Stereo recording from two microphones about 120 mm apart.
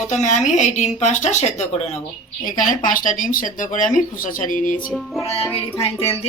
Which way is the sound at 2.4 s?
35° left (ahead or behind).